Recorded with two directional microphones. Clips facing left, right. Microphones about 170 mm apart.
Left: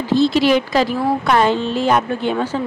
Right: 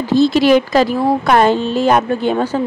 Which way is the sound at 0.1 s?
45° right (ahead or behind).